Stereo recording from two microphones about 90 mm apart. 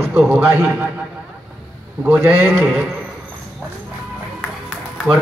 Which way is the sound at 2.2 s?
25° right (ahead or behind).